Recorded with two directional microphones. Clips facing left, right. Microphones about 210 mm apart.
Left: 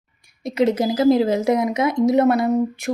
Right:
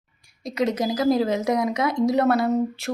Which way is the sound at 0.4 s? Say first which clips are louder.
Left 5 dB; 30° left (ahead or behind).